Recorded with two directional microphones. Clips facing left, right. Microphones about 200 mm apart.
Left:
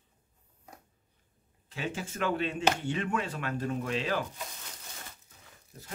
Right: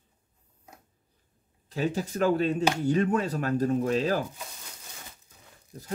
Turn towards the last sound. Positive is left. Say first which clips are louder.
# right 6 dB
turn(degrees=-40)  # may be behind; listen again after turning